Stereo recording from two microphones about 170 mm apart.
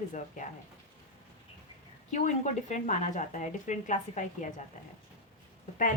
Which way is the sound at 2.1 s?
45° left (ahead or behind).